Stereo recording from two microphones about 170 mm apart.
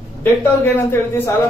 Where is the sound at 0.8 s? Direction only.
15° left (ahead or behind).